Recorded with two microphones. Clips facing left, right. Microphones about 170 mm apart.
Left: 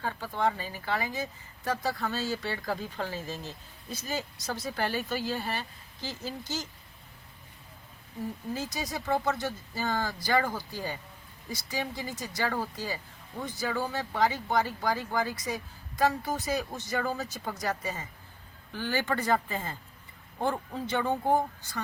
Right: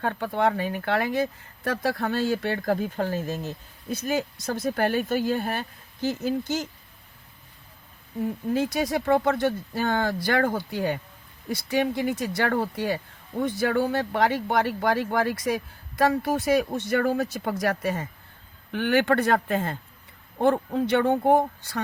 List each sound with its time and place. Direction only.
0.0 s speech: 65° right (ahead or behind)
8.2 s speech: 65° right (ahead or behind)